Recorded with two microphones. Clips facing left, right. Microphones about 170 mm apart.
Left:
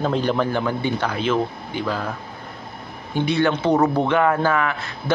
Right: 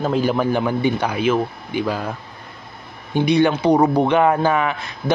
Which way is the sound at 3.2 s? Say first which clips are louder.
Right 4 dB; 15° right (ahead or behind).